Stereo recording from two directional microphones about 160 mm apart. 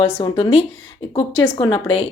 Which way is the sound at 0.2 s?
35° left (ahead or behind).